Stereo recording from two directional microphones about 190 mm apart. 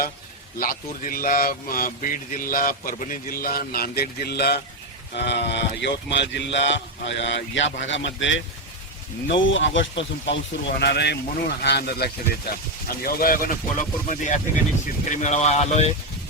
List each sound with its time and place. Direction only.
0.6 s speech: 50° left (ahead or behind)